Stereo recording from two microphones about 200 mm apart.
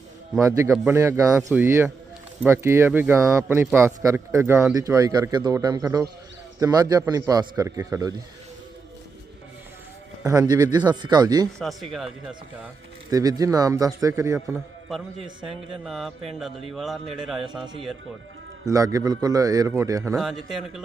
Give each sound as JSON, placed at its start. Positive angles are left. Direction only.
{"t": 0.3, "sound": "speech", "side_deg": -15}
{"t": 10.2, "sound": "speech", "side_deg": -20}
{"t": 11.6, "sound": "speech", "side_deg": 0}
{"t": 13.1, "sound": "speech", "side_deg": -20}
{"t": 15.4, "sound": "speech", "side_deg": 0}
{"t": 18.7, "sound": "speech", "side_deg": -15}
{"t": 20.1, "sound": "speech", "side_deg": 0}